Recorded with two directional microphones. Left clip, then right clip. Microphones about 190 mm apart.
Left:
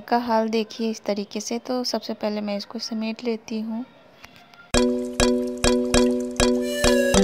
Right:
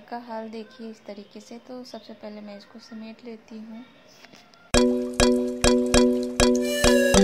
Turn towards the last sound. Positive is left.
turn(degrees=0)  # may be behind; listen again after turning